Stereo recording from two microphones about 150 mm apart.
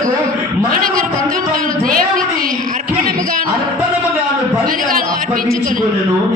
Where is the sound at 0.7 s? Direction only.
70° right (ahead or behind).